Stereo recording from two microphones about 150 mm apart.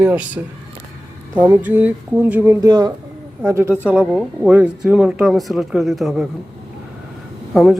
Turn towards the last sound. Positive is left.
turn(degrees=0)  # may be behind; listen again after turning